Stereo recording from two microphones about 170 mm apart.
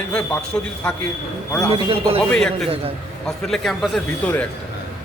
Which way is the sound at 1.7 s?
30° right (ahead or behind).